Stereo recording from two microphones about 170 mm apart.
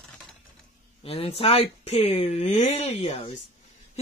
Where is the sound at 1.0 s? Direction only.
35° left (ahead or behind).